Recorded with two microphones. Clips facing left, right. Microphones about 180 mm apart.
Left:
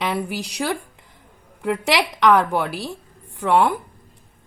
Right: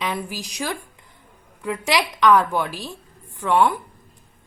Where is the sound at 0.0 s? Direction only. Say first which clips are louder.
Left 3 dB; 70° left (ahead or behind).